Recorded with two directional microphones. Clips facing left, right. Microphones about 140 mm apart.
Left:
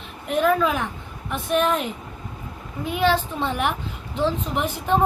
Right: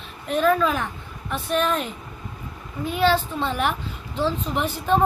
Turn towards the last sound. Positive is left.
turn(degrees=15)  # may be behind; listen again after turning